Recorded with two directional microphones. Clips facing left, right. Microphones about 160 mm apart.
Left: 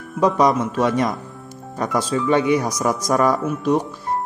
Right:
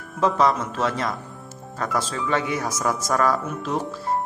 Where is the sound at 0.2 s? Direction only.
15° left (ahead or behind).